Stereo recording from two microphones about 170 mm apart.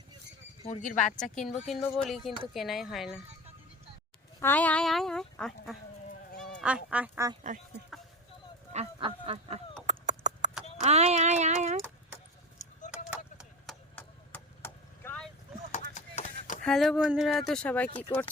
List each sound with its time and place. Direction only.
0.6 s speech: 45° left (ahead or behind)
2.0 s speech: centre (ahead or behind)
4.4 s speech: 10° left (ahead or behind); by 7.1 s 5° right (ahead or behind)
7.5 s speech: 45° right (ahead or behind)
8.7 s honk: 35° right (ahead or behind)
10.8 s a sound: 40° right (ahead or behind)
13.1 s a sound: 5° right (ahead or behind)
13.9 s vehicle: 10° left (ahead or behind)
15.7 s a sound: 45° left (ahead or behind)
16.6 s speech: centre (ahead or behind)